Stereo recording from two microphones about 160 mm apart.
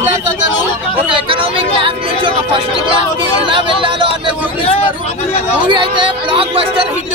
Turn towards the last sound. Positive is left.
turn(degrees=-35)  # may be behind; listen again after turning